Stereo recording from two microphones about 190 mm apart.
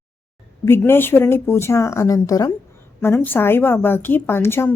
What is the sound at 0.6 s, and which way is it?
A woman's voice, 10° left (ahead or behind).